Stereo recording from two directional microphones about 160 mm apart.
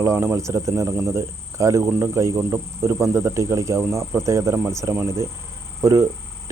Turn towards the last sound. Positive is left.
turn(degrees=-15)  # may be behind; listen again after turning